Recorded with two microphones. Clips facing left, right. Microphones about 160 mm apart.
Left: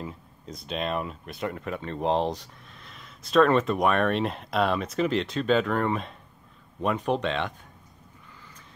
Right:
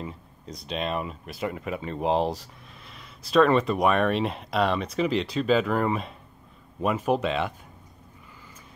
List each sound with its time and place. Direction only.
0.0 s speech: centre (ahead or behind)